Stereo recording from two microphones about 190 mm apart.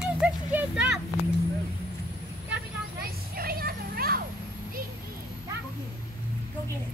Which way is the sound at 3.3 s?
50° right (ahead or behind).